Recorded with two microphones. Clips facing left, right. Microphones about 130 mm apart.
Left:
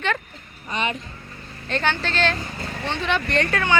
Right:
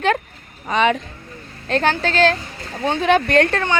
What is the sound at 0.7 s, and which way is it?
Speech, 90° right.